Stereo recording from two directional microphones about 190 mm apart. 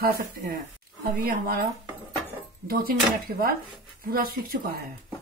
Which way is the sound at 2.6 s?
50° right (ahead or behind).